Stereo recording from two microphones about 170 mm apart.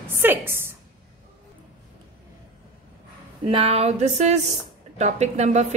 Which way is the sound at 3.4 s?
35° right (ahead or behind).